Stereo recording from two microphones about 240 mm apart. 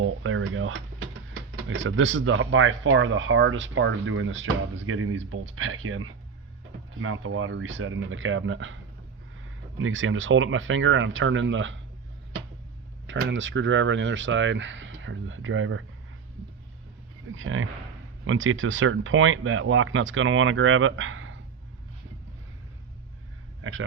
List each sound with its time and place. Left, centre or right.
0.0 s speech: right
13.1 s speech: right
17.3 s speech: right
23.6 s speech: right